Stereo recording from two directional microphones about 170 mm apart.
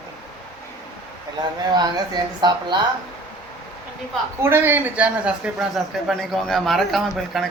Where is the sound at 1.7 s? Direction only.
25° right (ahead or behind).